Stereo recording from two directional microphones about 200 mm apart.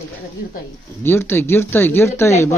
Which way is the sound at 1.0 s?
10° left (ahead or behind).